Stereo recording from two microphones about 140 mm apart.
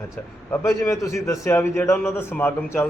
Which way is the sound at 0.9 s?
20° left (ahead or behind).